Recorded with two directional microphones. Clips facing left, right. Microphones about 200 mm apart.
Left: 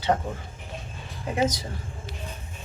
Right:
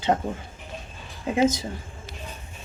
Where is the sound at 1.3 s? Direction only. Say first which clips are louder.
Right 4 dB; 25° right (ahead or behind).